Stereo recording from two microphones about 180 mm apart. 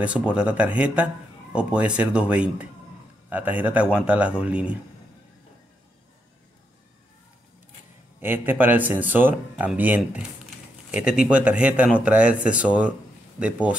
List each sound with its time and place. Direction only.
0.0 s speech: 5° right (ahead or behind)
8.2 s speech: 10° right (ahead or behind)